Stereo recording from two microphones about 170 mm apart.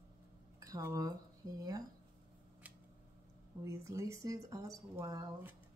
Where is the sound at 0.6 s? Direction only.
20° right (ahead or behind).